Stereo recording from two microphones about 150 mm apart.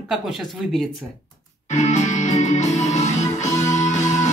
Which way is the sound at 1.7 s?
50° left (ahead or behind).